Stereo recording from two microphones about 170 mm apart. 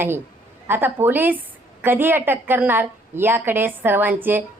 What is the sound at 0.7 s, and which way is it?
A woman's voice, 10° right (ahead or behind).